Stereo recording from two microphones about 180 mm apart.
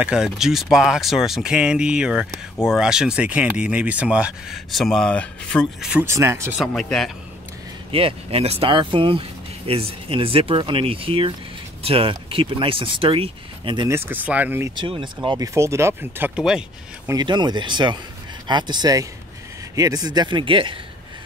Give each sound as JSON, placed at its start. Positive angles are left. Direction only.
{"t": 0.0, "sound": "speech", "side_deg": -5}
{"t": 6.6, "sound": "speech", "side_deg": 0}
{"t": 7.9, "sound": "speech", "side_deg": -30}
{"t": 13.8, "sound": "speech", "side_deg": -15}
{"t": 14.8, "sound": "speech", "side_deg": -25}
{"t": 17.1, "sound": "speech", "side_deg": -25}